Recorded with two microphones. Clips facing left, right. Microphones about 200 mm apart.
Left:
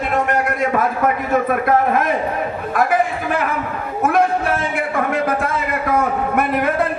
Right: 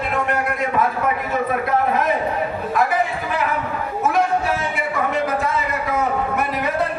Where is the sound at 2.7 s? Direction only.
50° left (ahead or behind).